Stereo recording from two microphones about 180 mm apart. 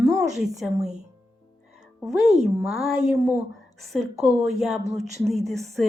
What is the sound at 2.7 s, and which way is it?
Speech, centre (ahead or behind).